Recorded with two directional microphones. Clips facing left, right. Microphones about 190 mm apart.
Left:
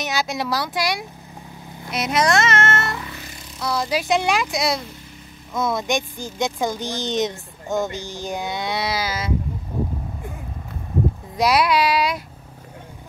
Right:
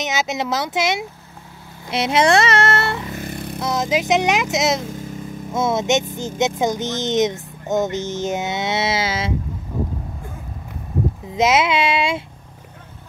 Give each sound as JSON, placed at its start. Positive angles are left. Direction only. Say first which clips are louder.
{"t": 0.0, "sound": "speech", "louder": "right 2 dB", "side_deg": -20}
{"t": 3.1, "sound": "a sound", "louder": "right 10 dB", "side_deg": -50}
{"t": 3.6, "sound": "speech", "louder": "right 2 dB", "side_deg": -20}
{"t": 4.8, "sound": "vehicle", "louder": "right 10 dB", "side_deg": -45}
{"t": 5.5, "sound": "speech", "louder": "right 4 dB", "side_deg": -25}
{"t": 11.3, "sound": "speech", "louder": "right 1 dB", "side_deg": -20}